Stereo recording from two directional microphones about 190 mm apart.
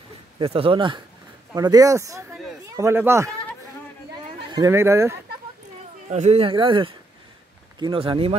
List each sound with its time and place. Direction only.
0.4 s speech: 30° right (ahead or behind); by 3.3 s 15° right (ahead or behind)
4.5 s speech: 20° right (ahead or behind)
6.0 s speech: 35° right (ahead or behind)